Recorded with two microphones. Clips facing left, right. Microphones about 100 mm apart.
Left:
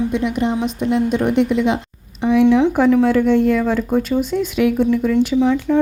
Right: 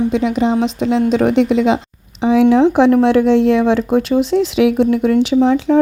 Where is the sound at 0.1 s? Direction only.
90° right.